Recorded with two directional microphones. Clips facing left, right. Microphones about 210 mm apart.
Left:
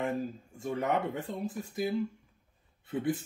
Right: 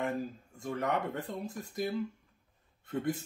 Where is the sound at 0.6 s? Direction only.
5° left (ahead or behind).